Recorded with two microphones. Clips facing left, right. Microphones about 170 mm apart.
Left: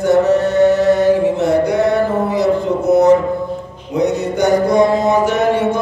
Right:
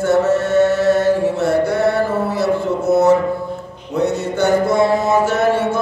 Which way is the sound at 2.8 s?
15° left (ahead or behind).